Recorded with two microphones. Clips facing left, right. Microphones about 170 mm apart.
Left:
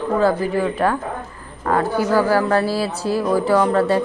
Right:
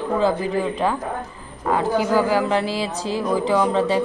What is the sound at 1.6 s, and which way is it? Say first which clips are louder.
A man's voice: left 1 dB; 10° right (ahead or behind).